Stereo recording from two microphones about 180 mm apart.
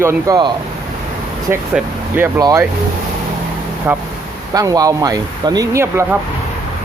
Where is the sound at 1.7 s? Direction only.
10° right (ahead or behind).